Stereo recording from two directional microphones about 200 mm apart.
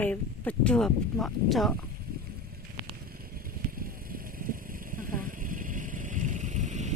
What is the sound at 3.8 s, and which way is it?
Vehicle, 45° right (ahead or behind).